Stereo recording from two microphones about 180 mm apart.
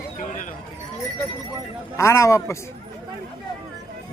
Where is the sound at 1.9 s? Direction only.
15° left (ahead or behind).